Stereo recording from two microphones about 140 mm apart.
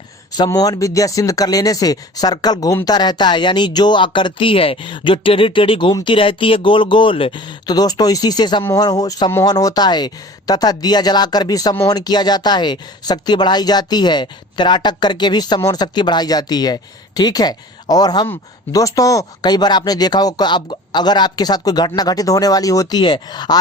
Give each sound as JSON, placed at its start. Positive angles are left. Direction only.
{"t": 0.3, "sound": "speech", "side_deg": 30}